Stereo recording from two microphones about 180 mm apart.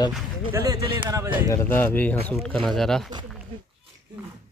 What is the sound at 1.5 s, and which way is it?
Speech, 10° left (ahead or behind).